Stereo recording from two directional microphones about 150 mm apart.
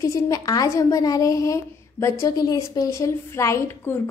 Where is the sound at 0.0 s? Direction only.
20° left (ahead or behind).